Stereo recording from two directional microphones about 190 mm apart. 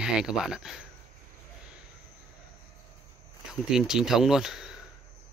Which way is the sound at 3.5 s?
Centre (ahead or behind).